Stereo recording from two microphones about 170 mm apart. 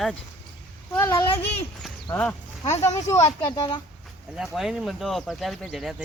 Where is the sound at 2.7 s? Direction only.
40° left (ahead or behind).